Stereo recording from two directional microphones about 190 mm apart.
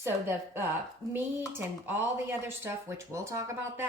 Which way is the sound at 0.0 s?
10° right (ahead or behind).